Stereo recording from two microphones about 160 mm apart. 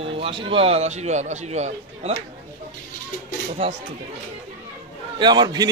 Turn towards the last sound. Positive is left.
turn(degrees=-25)  # may be behind; listen again after turning